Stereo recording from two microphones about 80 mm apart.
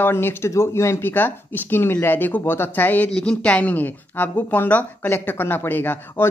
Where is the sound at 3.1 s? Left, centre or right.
Centre.